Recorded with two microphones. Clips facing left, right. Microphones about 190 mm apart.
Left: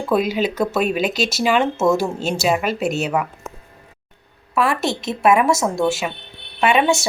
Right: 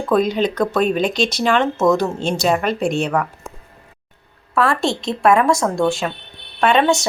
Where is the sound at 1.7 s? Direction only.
25° left (ahead or behind).